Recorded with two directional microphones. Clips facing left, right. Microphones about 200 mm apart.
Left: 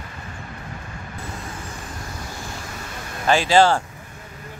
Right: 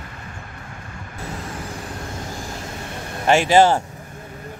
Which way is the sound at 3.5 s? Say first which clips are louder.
Right 1 dB; 20° right (ahead or behind).